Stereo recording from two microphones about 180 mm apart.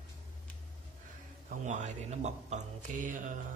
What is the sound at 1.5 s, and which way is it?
Speech, 40° right (ahead or behind).